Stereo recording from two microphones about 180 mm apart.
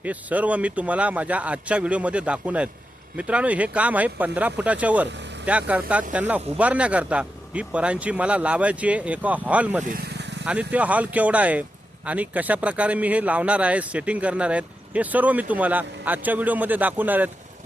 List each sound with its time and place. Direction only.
0.0 s speech: 10° right (ahead or behind)
10.1 s vehicle: 70° right (ahead or behind)
10.4 s speech: 5° right (ahead or behind)